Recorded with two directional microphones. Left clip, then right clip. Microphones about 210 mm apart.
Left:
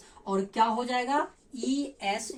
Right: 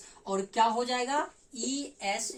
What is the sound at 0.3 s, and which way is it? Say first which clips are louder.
Speech: left 1 dB; 25° right (ahead or behind).